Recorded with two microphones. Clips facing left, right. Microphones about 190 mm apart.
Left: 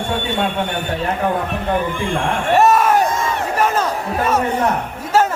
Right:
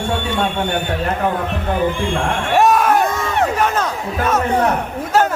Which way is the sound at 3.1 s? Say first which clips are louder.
Even; 65° right (ahead or behind).